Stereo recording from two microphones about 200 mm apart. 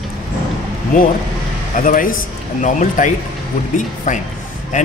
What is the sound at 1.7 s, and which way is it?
A man's voice, 40° left (ahead or behind).